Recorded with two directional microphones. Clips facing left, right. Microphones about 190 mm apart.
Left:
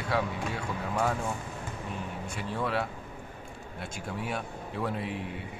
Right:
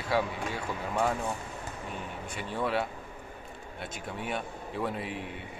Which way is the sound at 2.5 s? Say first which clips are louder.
Right 1 dB; centre (ahead or behind).